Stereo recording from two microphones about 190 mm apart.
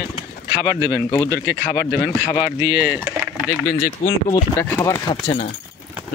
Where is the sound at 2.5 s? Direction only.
15° right (ahead or behind).